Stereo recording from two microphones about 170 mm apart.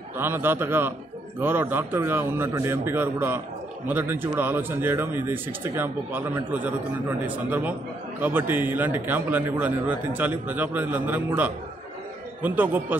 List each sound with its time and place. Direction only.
0.2 s a man's voice: 15° right (ahead or behind)